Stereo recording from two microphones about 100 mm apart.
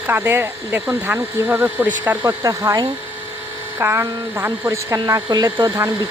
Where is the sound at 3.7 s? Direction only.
25° right (ahead or behind).